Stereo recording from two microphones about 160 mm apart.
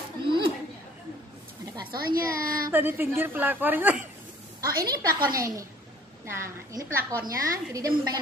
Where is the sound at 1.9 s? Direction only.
70° right (ahead or behind).